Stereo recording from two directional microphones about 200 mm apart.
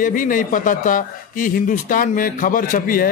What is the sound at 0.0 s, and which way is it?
A man's voice, 40° left (ahead or behind).